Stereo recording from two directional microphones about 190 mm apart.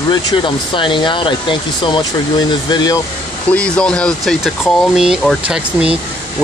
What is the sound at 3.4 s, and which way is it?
Speech, 5° left (ahead or behind).